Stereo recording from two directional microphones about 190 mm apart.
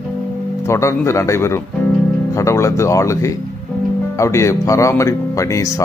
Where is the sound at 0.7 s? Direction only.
15° left (ahead or behind).